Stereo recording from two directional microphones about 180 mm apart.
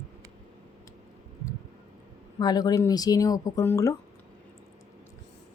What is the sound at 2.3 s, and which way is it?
Speech, 20° left (ahead or behind).